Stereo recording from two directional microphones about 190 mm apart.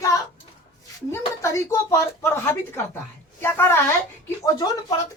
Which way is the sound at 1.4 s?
15° left (ahead or behind).